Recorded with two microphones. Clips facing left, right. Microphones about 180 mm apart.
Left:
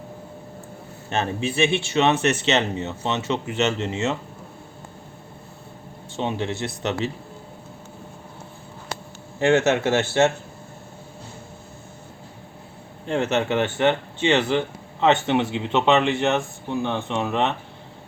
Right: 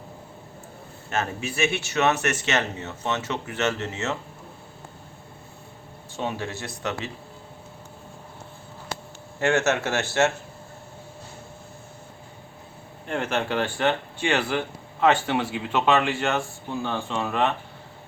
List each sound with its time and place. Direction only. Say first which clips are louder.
1.1 s speech: left 4 dB; 30° left (ahead or behind)
6.1 s speech: left 4 dB; 20° left (ahead or behind)
9.4 s speech: left 4 dB; 20° left (ahead or behind)
13.1 s speech: left 4 dB; 25° left (ahead or behind)